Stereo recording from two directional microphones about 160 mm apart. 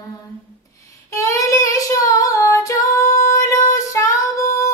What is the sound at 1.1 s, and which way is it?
Child singing, 20° left (ahead or behind).